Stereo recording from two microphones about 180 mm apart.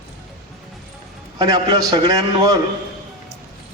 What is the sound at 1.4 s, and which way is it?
A man's voice, 20° right (ahead or behind).